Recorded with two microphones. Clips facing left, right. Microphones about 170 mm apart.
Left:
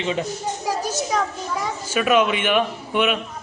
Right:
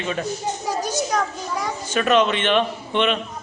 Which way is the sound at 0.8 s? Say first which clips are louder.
Right 3 dB; 5° left (ahead or behind).